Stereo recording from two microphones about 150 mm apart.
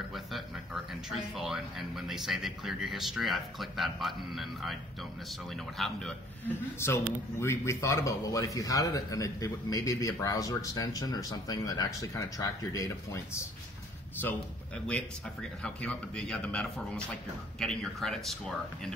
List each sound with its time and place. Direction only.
1.1 s speech: centre (ahead or behind)
5.8 s speech: 5° left (ahead or behind)
6.8 s speech: 15° left (ahead or behind)
15.6 s a man's voice: 5° left (ahead or behind)